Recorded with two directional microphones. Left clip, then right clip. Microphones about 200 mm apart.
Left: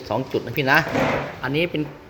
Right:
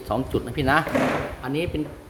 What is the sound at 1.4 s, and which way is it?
Speech, 10° left (ahead or behind).